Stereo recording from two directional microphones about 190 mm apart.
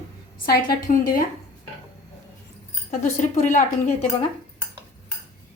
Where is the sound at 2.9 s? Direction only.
40° left (ahead or behind).